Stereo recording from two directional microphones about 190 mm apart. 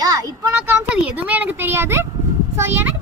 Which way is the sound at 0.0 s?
20° right (ahead or behind).